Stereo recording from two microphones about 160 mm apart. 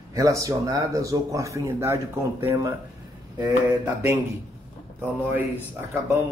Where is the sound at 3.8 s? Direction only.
20° right (ahead or behind).